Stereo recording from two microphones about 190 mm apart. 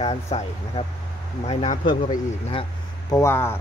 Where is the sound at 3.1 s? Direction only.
15° left (ahead or behind).